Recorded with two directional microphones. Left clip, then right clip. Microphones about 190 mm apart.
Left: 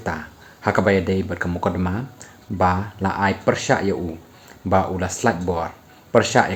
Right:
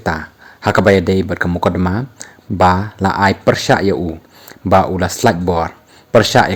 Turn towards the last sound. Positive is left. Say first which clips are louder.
# right 6 dB
turn(degrees=-45)  # may be behind; listen again after turning